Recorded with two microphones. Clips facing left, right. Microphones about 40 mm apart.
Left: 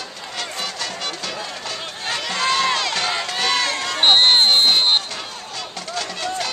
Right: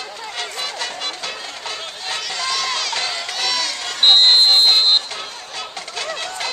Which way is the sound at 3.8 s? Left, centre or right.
Centre.